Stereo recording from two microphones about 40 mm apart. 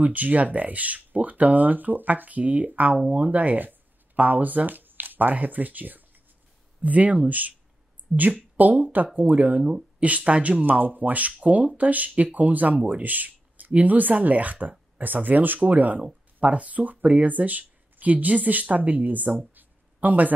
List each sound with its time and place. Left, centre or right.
0.0 s speech: right
9.6 s speech: centre
9.9 s speech: right
10.6 s speech: right
19.5 s a sound: right